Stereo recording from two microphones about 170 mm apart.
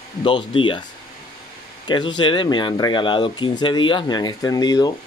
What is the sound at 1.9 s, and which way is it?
Speech, 25° left (ahead or behind).